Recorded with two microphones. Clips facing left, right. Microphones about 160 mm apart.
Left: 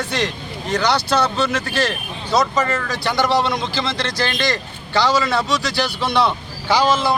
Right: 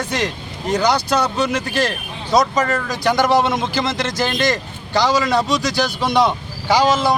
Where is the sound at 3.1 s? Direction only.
45° right (ahead or behind).